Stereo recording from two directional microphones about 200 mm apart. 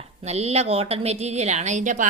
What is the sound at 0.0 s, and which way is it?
A woman's voice, 30° right (ahead or behind).